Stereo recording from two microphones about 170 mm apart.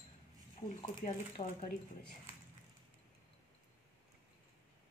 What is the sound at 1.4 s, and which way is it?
Speech, 40° left (ahead or behind).